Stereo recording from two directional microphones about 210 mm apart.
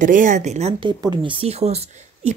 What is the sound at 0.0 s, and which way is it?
Speech, 40° right (ahead or behind).